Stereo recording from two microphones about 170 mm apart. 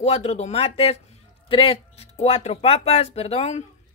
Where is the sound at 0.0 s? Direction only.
40° left (ahead or behind).